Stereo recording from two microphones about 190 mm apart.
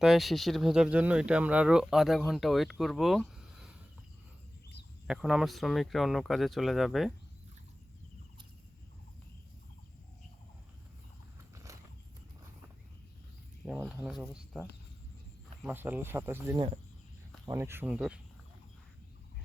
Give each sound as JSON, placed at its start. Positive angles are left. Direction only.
{"t": 0.0, "sound": "speech", "side_deg": 0}
{"t": 5.0, "sound": "speech", "side_deg": -5}
{"t": 11.5, "sound": "horse", "side_deg": -15}
{"t": 13.7, "sound": "speech", "side_deg": -5}